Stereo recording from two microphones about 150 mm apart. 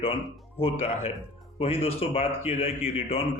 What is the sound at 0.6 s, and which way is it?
A man's voice, 45° left (ahead or behind).